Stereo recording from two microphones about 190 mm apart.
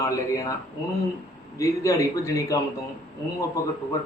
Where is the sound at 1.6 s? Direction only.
15° left (ahead or behind).